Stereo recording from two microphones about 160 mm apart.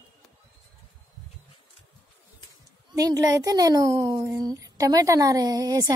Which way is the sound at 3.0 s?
20° right (ahead or behind).